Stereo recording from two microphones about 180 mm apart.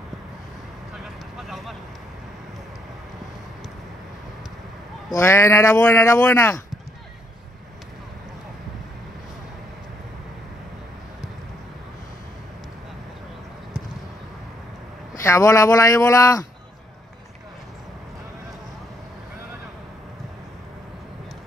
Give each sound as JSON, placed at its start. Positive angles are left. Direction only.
{"t": 5.1, "sound": "speech", "side_deg": 15}
{"t": 15.2, "sound": "speech", "side_deg": 15}